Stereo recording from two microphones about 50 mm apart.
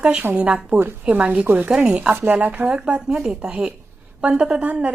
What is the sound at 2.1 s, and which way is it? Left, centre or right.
Speech, right.